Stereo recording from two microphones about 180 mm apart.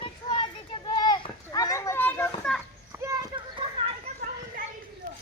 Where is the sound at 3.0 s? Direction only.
20° right (ahead or behind).